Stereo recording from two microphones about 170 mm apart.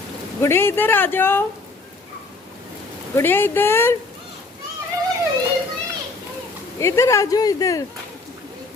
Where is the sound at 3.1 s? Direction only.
10° left (ahead or behind).